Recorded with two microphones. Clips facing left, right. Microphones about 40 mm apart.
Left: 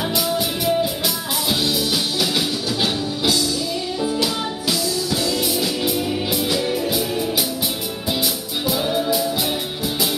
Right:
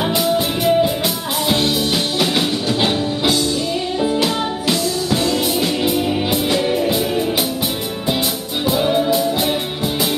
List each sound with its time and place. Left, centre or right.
0.4 s music: centre
8.6 s music: centre